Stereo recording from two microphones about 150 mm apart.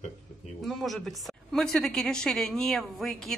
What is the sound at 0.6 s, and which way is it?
Speech, centre (ahead or behind).